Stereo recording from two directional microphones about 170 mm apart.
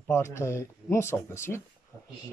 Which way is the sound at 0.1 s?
15° left (ahead or behind).